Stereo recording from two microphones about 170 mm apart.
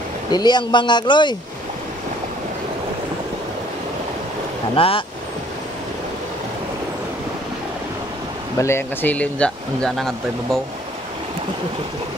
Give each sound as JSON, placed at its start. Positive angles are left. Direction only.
{"t": 0.3, "sound": "speech", "side_deg": 25}
{"t": 4.7, "sound": "speech", "side_deg": 30}
{"t": 8.5, "sound": "speech", "side_deg": 15}